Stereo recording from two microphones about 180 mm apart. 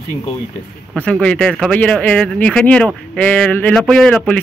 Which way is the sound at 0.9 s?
5° left (ahead or behind).